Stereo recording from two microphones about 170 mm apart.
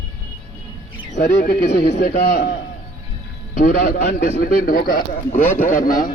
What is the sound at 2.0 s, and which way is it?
Speech, 75° left (ahead or behind).